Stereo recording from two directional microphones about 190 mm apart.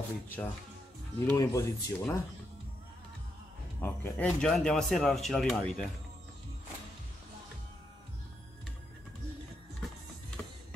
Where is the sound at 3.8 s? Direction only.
5° left (ahead or behind).